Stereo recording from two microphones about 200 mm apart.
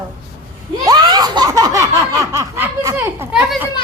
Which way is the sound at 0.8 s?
20° right (ahead or behind).